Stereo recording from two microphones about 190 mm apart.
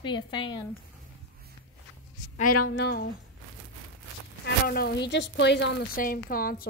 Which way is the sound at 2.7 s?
60° left (ahead or behind).